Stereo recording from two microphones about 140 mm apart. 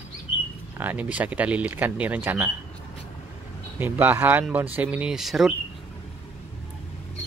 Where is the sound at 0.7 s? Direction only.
10° right (ahead or behind).